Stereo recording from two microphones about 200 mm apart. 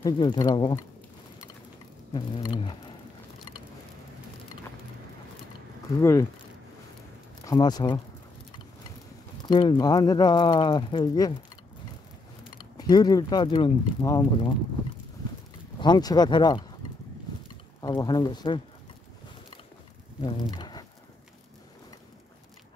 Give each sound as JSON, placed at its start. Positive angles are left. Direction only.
{"t": 0.0, "sound": "speech", "side_deg": 20}
{"t": 2.1, "sound": "speech", "side_deg": 25}
{"t": 5.9, "sound": "speech", "side_deg": 15}
{"t": 7.4, "sound": "speech", "side_deg": 20}
{"t": 9.5, "sound": "speech", "side_deg": 25}
{"t": 12.5, "sound": "speech", "side_deg": 20}
{"t": 15.8, "sound": "speech", "side_deg": 20}
{"t": 17.7, "sound": "speech", "side_deg": 20}
{"t": 20.5, "sound": "a sound", "side_deg": 20}